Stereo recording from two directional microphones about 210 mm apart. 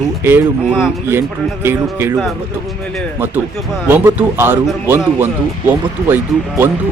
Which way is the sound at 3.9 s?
10° right (ahead or behind).